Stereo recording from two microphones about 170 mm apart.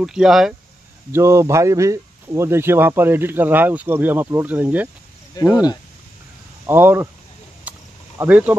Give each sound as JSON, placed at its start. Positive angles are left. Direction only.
{"t": 0.0, "sound": "speech", "side_deg": -5}
{"t": 1.1, "sound": "speech", "side_deg": -15}
{"t": 5.4, "sound": "speech", "side_deg": 25}
{"t": 6.6, "sound": "speech", "side_deg": -15}
{"t": 7.7, "sound": "a sound", "side_deg": -10}
{"t": 8.2, "sound": "speech", "side_deg": -10}